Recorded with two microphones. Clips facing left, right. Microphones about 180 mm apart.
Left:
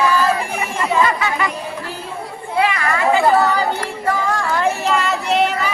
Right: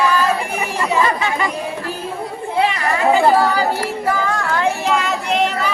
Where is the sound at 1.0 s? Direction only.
30° right (ahead or behind).